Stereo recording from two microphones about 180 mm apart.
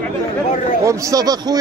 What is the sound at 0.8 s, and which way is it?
Speech, 15° right (ahead or behind).